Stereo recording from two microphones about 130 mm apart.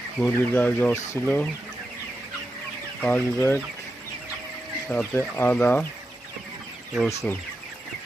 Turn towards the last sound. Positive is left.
turn(degrees=0)  # may be behind; listen again after turning